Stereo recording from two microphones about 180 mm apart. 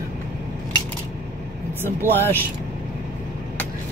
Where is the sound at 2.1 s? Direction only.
10° left (ahead or behind).